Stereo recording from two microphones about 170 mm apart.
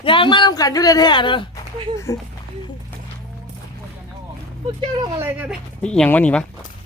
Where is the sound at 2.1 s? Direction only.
15° left (ahead or behind).